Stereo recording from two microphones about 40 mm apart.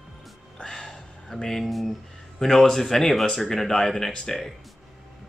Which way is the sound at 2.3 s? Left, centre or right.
Centre.